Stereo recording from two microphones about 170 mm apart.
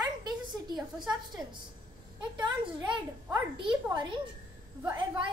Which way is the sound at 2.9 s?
25° right (ahead or behind).